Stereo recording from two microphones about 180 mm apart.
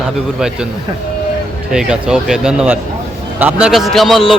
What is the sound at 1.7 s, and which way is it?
Speech, 5° right (ahead or behind).